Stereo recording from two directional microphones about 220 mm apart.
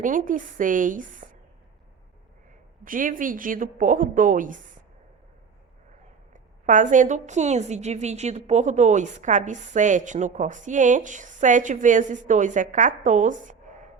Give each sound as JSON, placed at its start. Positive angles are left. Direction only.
{"t": 0.0, "sound": "a woman's voice", "side_deg": -35}
{"t": 2.8, "sound": "a woman's voice", "side_deg": -40}
{"t": 6.3, "sound": "a woman's voice", "side_deg": -35}